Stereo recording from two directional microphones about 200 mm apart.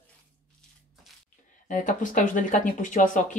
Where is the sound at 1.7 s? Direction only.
40° left (ahead or behind).